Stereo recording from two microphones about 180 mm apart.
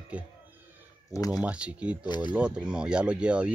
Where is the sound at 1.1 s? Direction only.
20° left (ahead or behind).